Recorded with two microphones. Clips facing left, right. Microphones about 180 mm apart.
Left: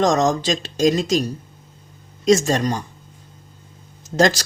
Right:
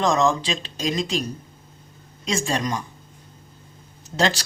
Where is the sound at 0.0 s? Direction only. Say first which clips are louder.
Left 3 dB; 40° left (ahead or behind).